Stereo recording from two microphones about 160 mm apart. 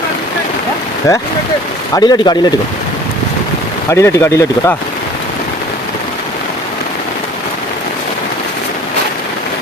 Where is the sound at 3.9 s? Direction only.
20° left (ahead or behind).